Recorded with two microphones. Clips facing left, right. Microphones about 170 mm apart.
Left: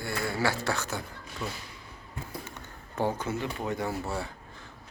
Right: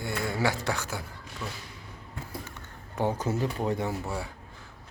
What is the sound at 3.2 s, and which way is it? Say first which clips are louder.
Speech: right 3 dB; 40° right (ahead or behind).